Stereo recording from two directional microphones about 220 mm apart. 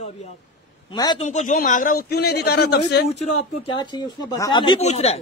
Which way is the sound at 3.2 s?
25° left (ahead or behind).